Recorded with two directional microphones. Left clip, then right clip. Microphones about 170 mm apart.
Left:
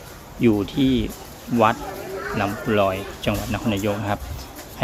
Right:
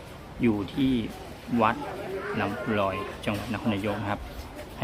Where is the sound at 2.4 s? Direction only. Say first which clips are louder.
Left 7 dB; 25° left (ahead or behind).